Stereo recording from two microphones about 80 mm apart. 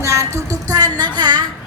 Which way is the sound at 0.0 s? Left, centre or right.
Right.